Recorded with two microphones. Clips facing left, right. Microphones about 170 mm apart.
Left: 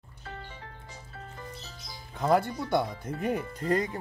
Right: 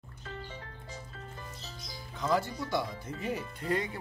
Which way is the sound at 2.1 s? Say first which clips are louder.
Left 5 dB; 55° left (ahead or behind).